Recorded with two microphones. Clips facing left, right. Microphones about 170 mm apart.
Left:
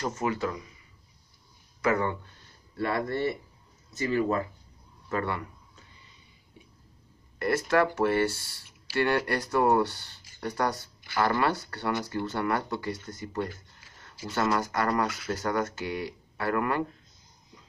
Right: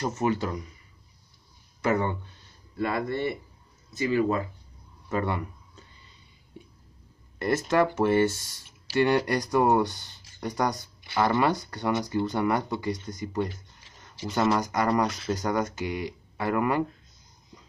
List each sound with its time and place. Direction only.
0.0 s speech: 25° right (ahead or behind)
1.8 s speech: 25° right (ahead or behind)
7.3 s speech: 20° right (ahead or behind)